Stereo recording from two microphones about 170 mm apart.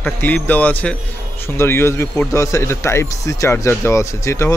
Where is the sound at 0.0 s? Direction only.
10° left (ahead or behind).